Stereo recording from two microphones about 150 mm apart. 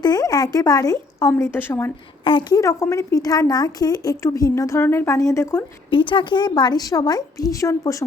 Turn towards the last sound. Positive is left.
turn(degrees=20)  # may be behind; listen again after turning